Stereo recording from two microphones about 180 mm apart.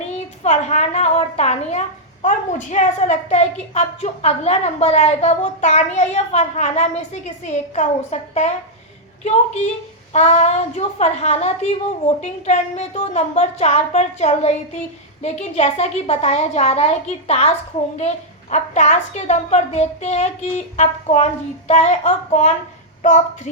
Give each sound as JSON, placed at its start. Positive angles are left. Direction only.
{"t": 0.4, "sound": "a woman's voice", "side_deg": 40}
{"t": 18.5, "sound": "a woman's voice", "side_deg": 40}